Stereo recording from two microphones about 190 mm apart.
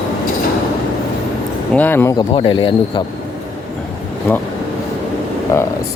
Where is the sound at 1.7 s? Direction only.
10° left (ahead or behind).